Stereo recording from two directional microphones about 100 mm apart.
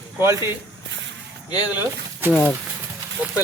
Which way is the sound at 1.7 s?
20° right (ahead or behind).